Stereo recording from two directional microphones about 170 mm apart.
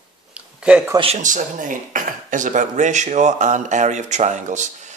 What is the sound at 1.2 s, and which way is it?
Speech, 50° right (ahead or behind).